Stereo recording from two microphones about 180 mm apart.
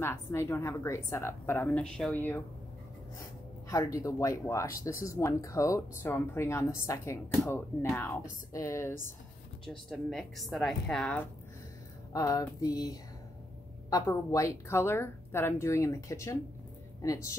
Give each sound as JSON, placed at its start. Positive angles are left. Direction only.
{"t": 0.0, "sound": "a woman's voice", "side_deg": 15}
{"t": 3.6, "sound": "a woman's voice", "side_deg": 20}
{"t": 9.7, "sound": "a woman's voice", "side_deg": 0}
{"t": 12.1, "sound": "a sound", "side_deg": 20}
{"t": 13.8, "sound": "a woman's voice", "side_deg": 20}